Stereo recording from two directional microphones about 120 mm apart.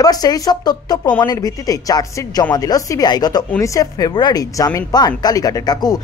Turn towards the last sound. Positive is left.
turn(degrees=35)  # may be behind; listen again after turning